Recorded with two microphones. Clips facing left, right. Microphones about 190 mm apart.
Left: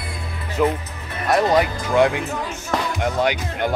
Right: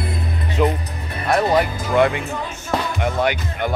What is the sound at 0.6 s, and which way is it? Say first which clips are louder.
Speech: even; centre (ahead or behind).